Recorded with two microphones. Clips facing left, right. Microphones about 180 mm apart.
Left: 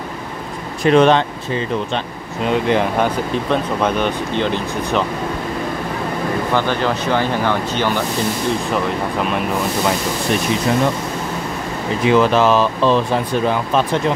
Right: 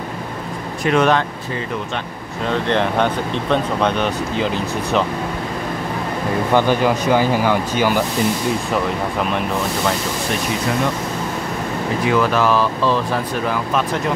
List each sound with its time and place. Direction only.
0.8 s speech: 30° left (ahead or behind)
2.4 s speech: 10° left (ahead or behind)
6.5 s speech: 10° right (ahead or behind)
12.0 s speech: 25° left (ahead or behind)